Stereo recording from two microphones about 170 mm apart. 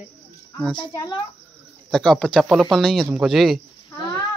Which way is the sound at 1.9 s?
Centre (ahead or behind).